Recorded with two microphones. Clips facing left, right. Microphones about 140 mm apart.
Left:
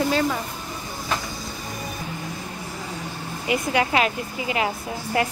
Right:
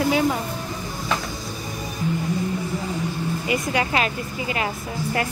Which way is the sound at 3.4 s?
10° left (ahead or behind).